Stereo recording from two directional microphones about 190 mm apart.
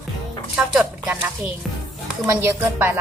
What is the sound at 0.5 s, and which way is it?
A woman's voice, centre (ahead or behind).